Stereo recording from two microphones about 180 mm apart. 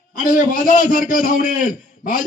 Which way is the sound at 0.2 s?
50° left (ahead or behind).